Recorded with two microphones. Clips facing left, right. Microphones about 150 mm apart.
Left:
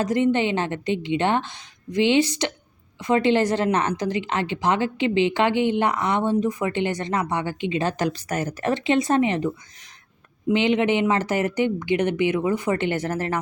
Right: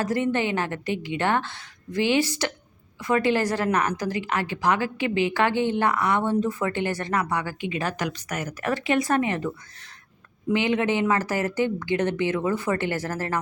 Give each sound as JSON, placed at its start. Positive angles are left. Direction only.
{"t": 0.0, "sound": "a woman's voice", "side_deg": 20}
{"t": 10.5, "sound": "a woman's voice", "side_deg": 20}